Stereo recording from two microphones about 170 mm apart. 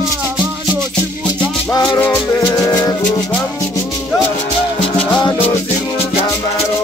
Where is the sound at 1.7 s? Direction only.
25° left (ahead or behind).